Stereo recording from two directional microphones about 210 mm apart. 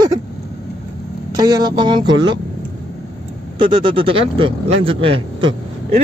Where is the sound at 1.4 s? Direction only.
20° right (ahead or behind).